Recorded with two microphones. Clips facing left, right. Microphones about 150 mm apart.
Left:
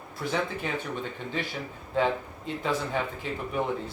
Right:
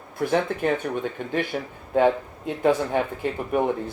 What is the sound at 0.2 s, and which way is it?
Speech, 55° right (ahead or behind).